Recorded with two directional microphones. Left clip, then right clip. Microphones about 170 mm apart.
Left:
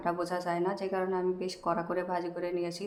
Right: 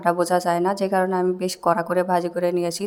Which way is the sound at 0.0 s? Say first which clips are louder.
Right 12 dB; 50° right (ahead or behind).